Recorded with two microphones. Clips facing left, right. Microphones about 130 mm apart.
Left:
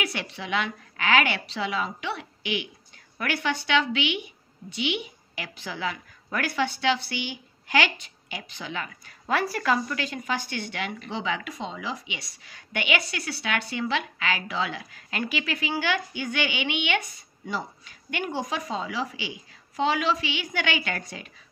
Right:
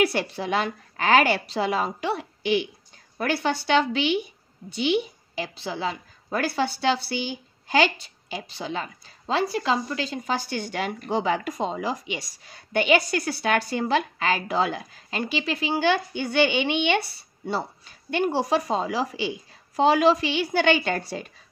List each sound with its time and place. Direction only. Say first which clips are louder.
0.0 s a woman's voice: right 9 dB; 40° right (ahead or behind)